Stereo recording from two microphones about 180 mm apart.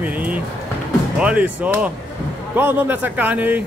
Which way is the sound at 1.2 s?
5° right (ahead or behind).